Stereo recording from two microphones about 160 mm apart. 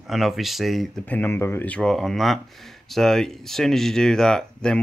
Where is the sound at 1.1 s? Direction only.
10° left (ahead or behind).